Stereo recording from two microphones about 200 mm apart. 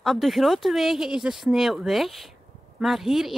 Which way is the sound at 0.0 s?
Centre (ahead or behind).